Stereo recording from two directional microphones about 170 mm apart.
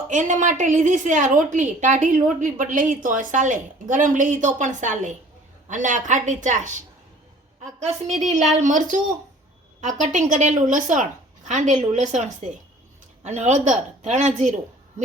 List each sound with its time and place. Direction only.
0.1 s a woman's voice: 45° right (ahead or behind)